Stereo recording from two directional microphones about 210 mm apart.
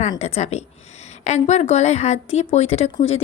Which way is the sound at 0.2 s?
30° left (ahead or behind).